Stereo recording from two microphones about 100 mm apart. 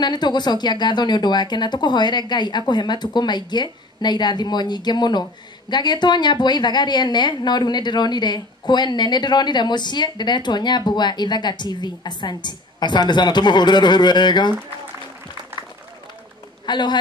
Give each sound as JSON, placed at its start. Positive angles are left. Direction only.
{"t": 0.0, "sound": "a woman's voice", "side_deg": 45}
{"t": 16.6, "sound": "a man's voice", "side_deg": 45}